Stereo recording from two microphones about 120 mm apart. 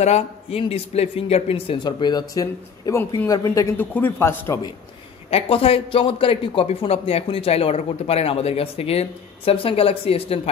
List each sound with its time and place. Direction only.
0.0 s speech: 60° left (ahead or behind)
1.8 s speech: 40° left (ahead or behind)
3.7 s a man's voice: 15° left (ahead or behind)
5.3 s speech: 55° left (ahead or behind)